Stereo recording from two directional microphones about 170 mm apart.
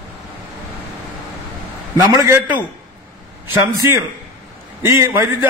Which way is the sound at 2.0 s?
15° right (ahead or behind).